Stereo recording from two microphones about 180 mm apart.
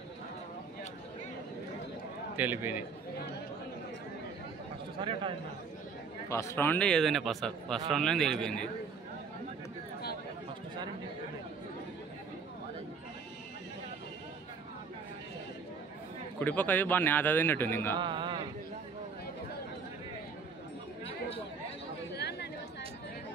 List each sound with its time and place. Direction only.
2.3 s a man's voice: 10° right (ahead or behind)
4.9 s a man's voice: 30° right (ahead or behind)
6.2 s a man's voice: 15° left (ahead or behind)
16.3 s speech: 10° left (ahead or behind)
17.9 s a sound: 25° right (ahead or behind)
22.1 s chatter: 65° left (ahead or behind)